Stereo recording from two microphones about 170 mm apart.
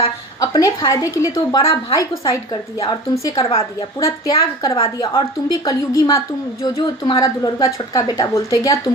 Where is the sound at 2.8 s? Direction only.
30° left (ahead or behind).